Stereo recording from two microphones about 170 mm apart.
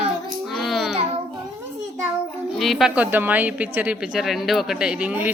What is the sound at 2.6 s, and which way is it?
A woman's voice, centre (ahead or behind).